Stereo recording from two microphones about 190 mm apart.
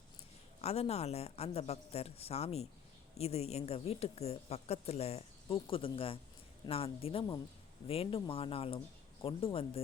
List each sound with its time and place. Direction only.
0.6 s a woman's voice: 35° left (ahead or behind)